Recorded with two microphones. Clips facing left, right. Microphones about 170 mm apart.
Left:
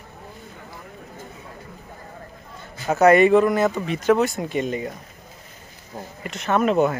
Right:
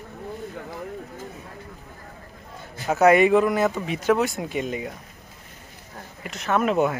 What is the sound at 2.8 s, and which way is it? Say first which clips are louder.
A man's voice: left 2 dB; 5° right (ahead or behind).